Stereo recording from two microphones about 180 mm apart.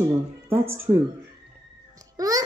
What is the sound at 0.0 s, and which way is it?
A woman's voice, 15° right (ahead or behind).